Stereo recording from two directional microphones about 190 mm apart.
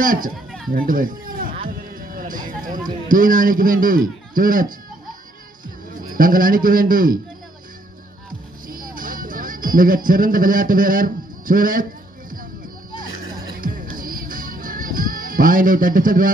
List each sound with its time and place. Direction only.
0.0 s speech: 45° right (ahead or behind)
2.0 s a sound: 50° right (ahead or behind)
3.1 s speech: 45° right (ahead or behind)
6.1 s speech: 45° right (ahead or behind)
8.6 s music: 45° right (ahead or behind)
13.6 s music: 45° right (ahead or behind)